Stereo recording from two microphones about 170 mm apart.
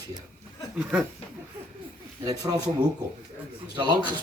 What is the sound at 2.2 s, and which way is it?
Speech, 20° right (ahead or behind).